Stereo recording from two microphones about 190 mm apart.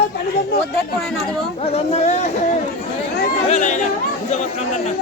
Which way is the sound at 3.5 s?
40° left (ahead or behind).